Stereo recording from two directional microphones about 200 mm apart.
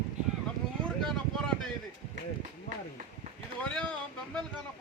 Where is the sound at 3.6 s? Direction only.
5° left (ahead or behind).